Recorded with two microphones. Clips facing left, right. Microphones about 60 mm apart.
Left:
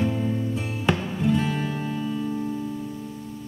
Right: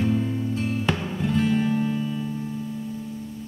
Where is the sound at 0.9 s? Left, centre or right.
Centre.